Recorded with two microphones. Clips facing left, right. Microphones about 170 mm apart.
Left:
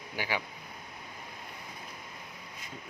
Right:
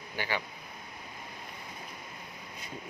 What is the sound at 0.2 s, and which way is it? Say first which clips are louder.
Speech: even; 10° left (ahead or behind).